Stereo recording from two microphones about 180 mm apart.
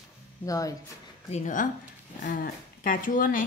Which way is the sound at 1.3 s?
45° left (ahead or behind).